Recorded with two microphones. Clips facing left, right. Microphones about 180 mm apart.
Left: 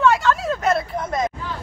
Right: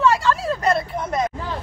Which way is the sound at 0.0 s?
Centre (ahead or behind).